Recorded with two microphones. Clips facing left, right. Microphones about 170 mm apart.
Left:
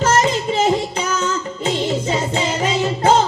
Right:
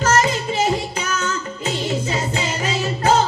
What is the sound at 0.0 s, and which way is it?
Music, 30° left (ahead or behind).